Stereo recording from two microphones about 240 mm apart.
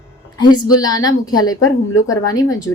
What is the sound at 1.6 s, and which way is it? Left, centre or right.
Speech, left.